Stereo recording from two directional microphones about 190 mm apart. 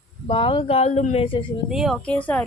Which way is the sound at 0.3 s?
25° left (ahead or behind).